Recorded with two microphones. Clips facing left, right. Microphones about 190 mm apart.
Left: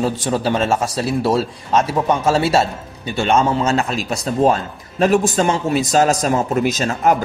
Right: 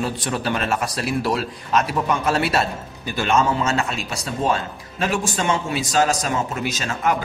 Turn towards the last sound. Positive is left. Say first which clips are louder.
# left 6 dB
turn(degrees=40)  # may be behind; listen again after turning